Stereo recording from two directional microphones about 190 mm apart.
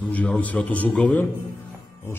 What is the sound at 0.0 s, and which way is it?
A man's voice, 10° left (ahead or behind).